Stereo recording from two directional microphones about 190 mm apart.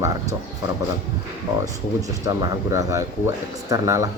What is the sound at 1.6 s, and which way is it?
Speech, 20° right (ahead or behind).